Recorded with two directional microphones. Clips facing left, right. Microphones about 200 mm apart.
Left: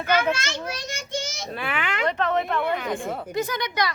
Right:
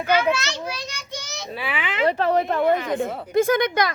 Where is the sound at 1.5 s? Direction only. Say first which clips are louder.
Right 5 dB; 5° right (ahead or behind).